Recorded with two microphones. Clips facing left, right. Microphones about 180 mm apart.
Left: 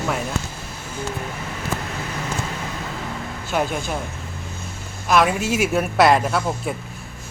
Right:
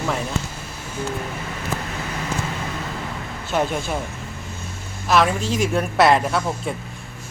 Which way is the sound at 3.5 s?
Centre (ahead or behind).